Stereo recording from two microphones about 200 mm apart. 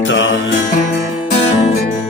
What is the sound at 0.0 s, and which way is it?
Music, 70° left (ahead or behind).